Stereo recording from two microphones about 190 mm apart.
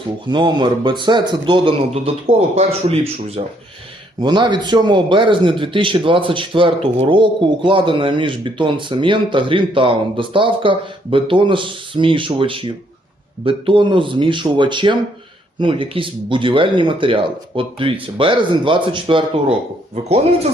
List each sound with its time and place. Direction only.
0.3 s a man's voice: 25° right (ahead or behind)
4.2 s a man's voice: 25° right (ahead or behind)